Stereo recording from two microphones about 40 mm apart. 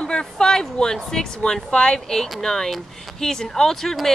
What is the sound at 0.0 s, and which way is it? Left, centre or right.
Speech, left.